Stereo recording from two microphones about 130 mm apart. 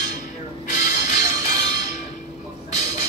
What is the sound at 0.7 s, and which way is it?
Music, 65° left (ahead or behind).